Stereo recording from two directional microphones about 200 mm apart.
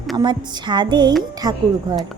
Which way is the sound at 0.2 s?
20° right (ahead or behind).